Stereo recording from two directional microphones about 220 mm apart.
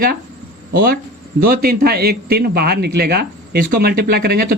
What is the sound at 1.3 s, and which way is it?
A man's voice, 40° right (ahead or behind).